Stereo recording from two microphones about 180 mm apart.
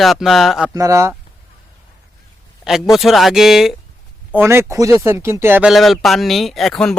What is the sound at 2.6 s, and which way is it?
Speech, centre (ahead or behind).